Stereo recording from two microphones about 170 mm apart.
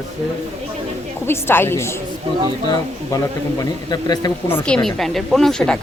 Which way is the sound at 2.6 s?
25° left (ahead or behind).